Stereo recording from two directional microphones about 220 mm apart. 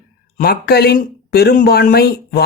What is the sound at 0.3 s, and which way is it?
Speech, 45° left (ahead or behind).